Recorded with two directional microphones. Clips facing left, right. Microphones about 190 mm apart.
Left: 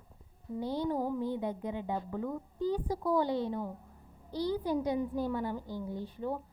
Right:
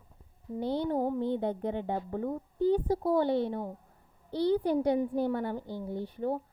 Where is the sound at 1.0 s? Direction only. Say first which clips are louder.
Right 3 dB; 25° right (ahead or behind).